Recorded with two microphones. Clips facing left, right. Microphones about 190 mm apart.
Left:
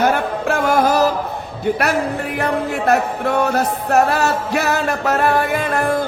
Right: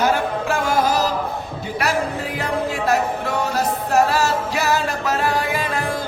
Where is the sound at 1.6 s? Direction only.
60° left (ahead or behind).